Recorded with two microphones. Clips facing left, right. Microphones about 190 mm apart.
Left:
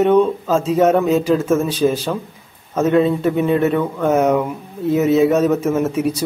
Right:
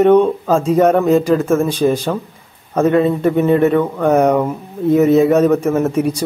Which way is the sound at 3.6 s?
55° right (ahead or behind).